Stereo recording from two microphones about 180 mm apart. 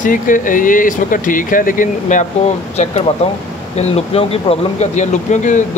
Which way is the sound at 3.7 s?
35° left (ahead or behind).